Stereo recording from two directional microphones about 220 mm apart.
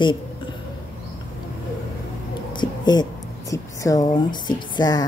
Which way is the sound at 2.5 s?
20° left (ahead or behind).